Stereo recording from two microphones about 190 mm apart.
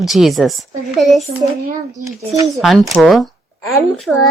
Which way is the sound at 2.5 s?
Centre (ahead or behind).